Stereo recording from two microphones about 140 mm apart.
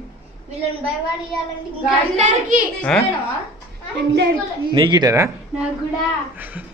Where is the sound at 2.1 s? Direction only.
55° right (ahead or behind).